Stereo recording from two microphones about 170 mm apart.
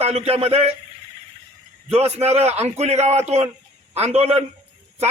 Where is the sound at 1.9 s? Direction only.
35° right (ahead or behind).